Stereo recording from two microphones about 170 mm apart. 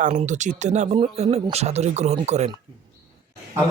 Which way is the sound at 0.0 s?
45° right (ahead or behind).